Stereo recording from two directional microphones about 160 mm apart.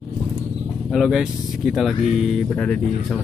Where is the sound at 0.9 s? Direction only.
Centre (ahead or behind).